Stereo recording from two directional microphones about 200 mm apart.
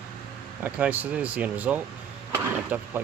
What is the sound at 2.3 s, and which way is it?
Vehicle, 10° right (ahead or behind).